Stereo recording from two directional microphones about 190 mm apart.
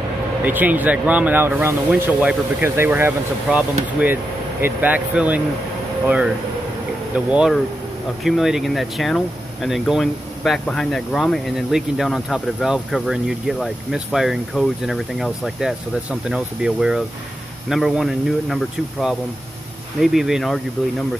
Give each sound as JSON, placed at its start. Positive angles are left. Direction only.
{"t": 0.5, "sound": "speech", "side_deg": -10}